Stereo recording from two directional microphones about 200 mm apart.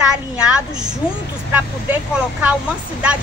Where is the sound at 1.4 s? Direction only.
10° right (ahead or behind).